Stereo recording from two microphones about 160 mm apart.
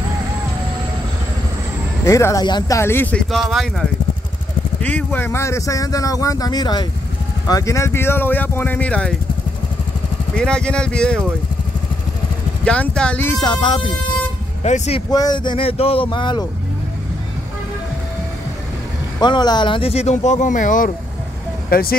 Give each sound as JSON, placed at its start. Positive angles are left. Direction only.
{"t": 2.0, "sound": "speech", "side_deg": 20}
{"t": 2.8, "sound": "speech", "side_deg": 15}
{"t": 4.8, "sound": "speech", "side_deg": 10}
{"t": 10.3, "sound": "speech", "side_deg": 5}
{"t": 12.6, "sound": "speech", "side_deg": 5}
{"t": 13.4, "sound": "speech", "side_deg": 30}
{"t": 14.6, "sound": "speech", "side_deg": 40}
{"t": 15.0, "sound": "speech", "side_deg": 25}
{"t": 19.1, "sound": "speech", "side_deg": 25}
{"t": 21.6, "sound": "speech", "side_deg": 70}